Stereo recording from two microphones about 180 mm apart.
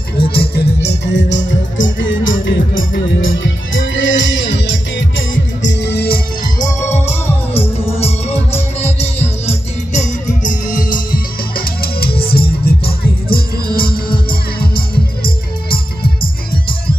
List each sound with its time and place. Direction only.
0.3 s music: 65° left (ahead or behind)
7.2 s music: 10° left (ahead or behind)
8.5 s music: 35° left (ahead or behind); by 13.9 s 55° left (ahead or behind)